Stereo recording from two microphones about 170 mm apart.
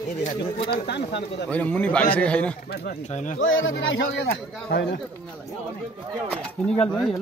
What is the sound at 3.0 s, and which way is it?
Speech, 45° left (ahead or behind).